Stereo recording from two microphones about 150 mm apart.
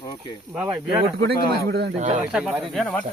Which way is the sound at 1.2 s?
90° right.